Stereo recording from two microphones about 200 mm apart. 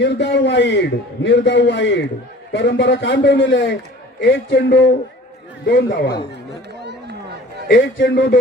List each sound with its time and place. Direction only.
0.0 s a man's voice: 60° left (ahead or behind)
7.7 s a man's voice: 60° left (ahead or behind)